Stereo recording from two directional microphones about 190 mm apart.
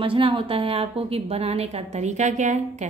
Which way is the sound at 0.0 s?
30° right (ahead or behind).